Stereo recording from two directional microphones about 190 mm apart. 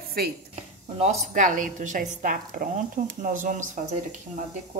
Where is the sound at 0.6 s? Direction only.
35° right (ahead or behind).